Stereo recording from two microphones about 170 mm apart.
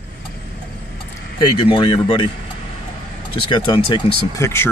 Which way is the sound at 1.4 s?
25° left (ahead or behind).